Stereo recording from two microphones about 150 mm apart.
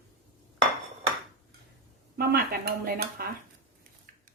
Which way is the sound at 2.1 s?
80° right.